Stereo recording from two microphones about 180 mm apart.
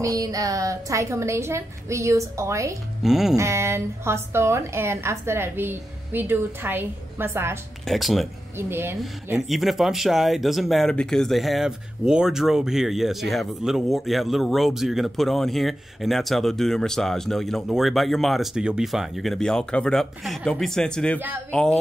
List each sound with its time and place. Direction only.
0.0 s a woman's voice: 20° right (ahead or behind)
3.0 s speech: centre (ahead or behind)
3.3 s a woman's voice: 15° right (ahead or behind)
7.8 s speech: centre (ahead or behind)
8.5 s a woman's voice: 15° right (ahead or behind)
9.5 s speech: centre (ahead or behind)